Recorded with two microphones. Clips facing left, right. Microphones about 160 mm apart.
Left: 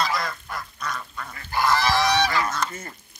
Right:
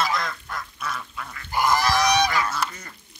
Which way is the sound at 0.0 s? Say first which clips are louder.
Even; centre (ahead or behind).